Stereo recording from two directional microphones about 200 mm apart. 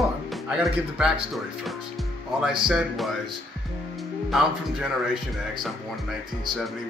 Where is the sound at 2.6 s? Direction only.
Centre (ahead or behind).